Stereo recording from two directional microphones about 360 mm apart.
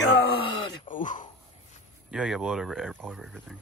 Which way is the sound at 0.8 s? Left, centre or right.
Left.